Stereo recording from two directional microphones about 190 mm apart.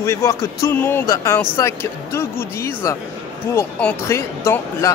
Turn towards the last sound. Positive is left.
turn(degrees=15)  # may be behind; listen again after turning